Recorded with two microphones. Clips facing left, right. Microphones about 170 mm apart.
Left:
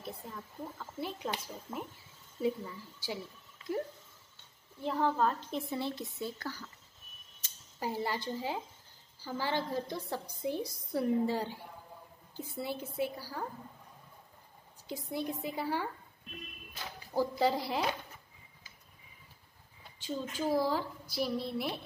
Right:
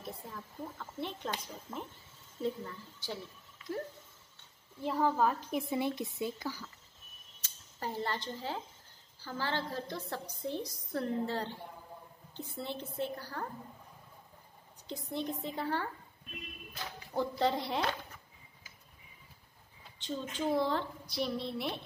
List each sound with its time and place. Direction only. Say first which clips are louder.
0.0 s a woman's voice: left 1 dB; centre (ahead or behind)
3.6 s a sound: left 3 dB; 30° left (ahead or behind)
4.8 s speech: even; 5° right (ahead or behind)
7.4 s a woman's voice: left 2 dB; 10° left (ahead or behind)
14.9 s a woman's voice: left 1 dB; 10° left (ahead or behind)
17.1 s speech: left 2 dB; 5° left (ahead or behind)
20.0 s speech: left 1 dB; 5° left (ahead or behind)